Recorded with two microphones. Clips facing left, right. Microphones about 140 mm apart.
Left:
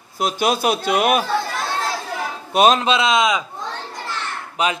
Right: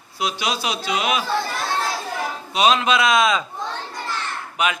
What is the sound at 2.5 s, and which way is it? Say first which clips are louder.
Speech: left 4 dB; 50° left (ahead or behind).